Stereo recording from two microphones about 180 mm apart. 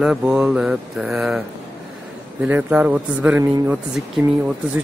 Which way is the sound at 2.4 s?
10° right (ahead or behind).